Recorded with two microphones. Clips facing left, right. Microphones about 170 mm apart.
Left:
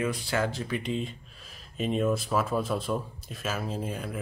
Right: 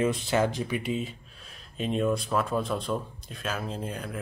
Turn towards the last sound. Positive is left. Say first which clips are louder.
# left 1 dB
turn(degrees=5)  # may be behind; listen again after turning